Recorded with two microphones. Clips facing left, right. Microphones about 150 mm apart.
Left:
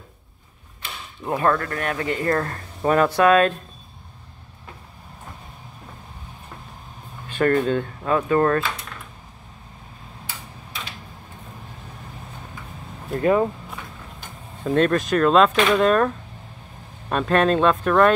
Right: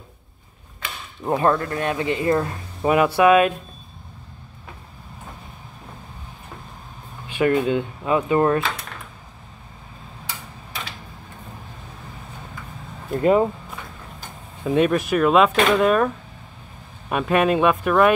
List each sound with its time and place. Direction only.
1.2 s speech: 25° right (ahead or behind)
7.2 s speech: 10° right (ahead or behind)
13.2 s speech: 20° right (ahead or behind)
14.6 s speech: 10° right (ahead or behind)
17.1 s speech: 10° right (ahead or behind)